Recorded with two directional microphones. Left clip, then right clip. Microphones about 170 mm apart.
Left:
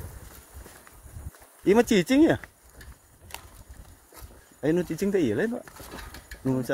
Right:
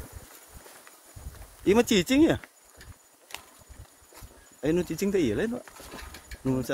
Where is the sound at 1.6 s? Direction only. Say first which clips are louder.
Left 2 dB; 10° right (ahead or behind).